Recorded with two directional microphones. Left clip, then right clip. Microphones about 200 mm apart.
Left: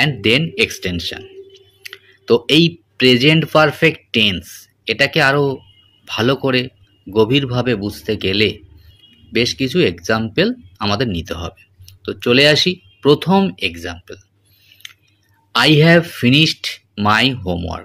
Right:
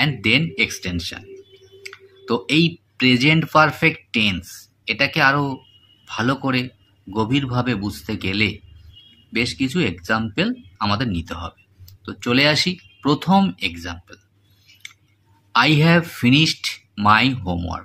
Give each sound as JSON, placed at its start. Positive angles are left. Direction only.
{"t": 0.0, "sound": "speech", "side_deg": 15}
{"t": 15.5, "sound": "speech", "side_deg": 15}